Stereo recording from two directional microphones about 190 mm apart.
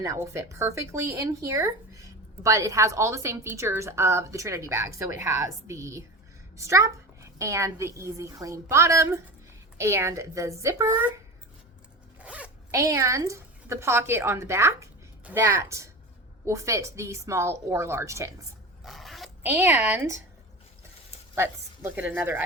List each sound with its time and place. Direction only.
0.0 s speech: 15° right (ahead or behind)
12.2 s speech: 5° right (ahead or behind)
18.8 s biting: centre (ahead or behind)
19.4 s speech: 10° right (ahead or behind)
21.8 s speech: 10° right (ahead or behind)